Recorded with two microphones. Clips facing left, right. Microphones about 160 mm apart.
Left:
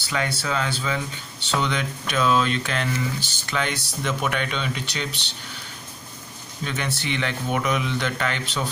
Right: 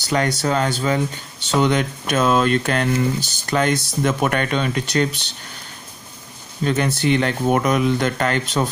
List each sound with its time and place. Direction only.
0.1 s speech: 40° right (ahead or behind)
6.6 s speech: 45° right (ahead or behind)